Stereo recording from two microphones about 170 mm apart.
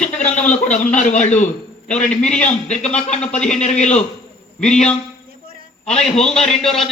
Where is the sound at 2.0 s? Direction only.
5° left (ahead or behind).